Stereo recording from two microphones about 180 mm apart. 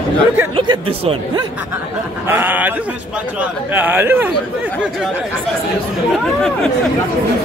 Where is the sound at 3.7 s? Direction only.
10° right (ahead or behind).